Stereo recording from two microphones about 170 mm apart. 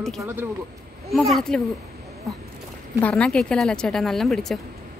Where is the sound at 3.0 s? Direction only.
5° left (ahead or behind).